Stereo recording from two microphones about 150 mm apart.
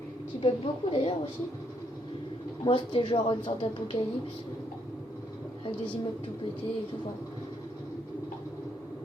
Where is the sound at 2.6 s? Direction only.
35° left (ahead or behind).